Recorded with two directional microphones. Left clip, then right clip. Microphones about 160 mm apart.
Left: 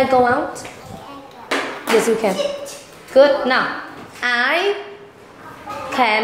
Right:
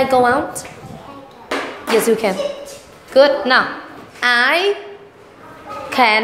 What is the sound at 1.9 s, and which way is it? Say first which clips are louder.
A woman's voice: right 1 dB; 25° right (ahead or behind).